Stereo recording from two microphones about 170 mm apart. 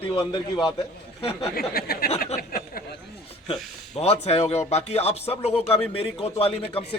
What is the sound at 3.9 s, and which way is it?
A man's voice, 40° left (ahead or behind).